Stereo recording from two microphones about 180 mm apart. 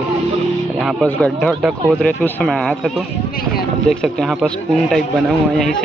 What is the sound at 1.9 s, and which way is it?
Speech, 5° left (ahead or behind).